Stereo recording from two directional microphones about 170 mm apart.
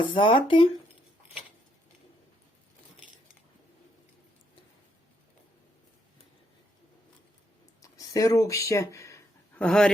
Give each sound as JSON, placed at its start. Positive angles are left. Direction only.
{"t": 0.1, "sound": "speech", "side_deg": 30}
{"t": 7.8, "sound": "a sound", "side_deg": 20}
{"t": 9.6, "sound": "speech", "side_deg": 5}